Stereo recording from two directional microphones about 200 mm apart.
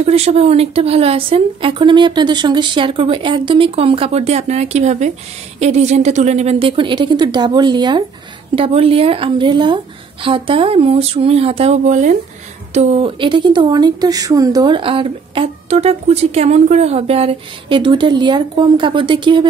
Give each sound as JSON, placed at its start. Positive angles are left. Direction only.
{"t": 0.0, "sound": "speech", "side_deg": -30}